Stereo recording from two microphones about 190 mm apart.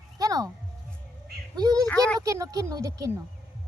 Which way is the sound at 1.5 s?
20° right (ahead or behind).